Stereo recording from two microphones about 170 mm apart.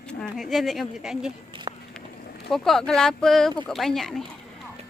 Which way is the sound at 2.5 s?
Centre (ahead or behind).